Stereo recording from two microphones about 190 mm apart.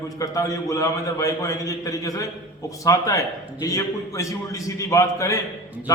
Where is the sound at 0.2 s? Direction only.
15° left (ahead or behind).